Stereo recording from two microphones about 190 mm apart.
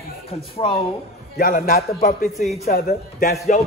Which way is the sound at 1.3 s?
50° left (ahead or behind).